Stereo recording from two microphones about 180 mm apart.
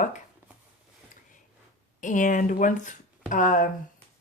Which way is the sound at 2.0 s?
45° left (ahead or behind).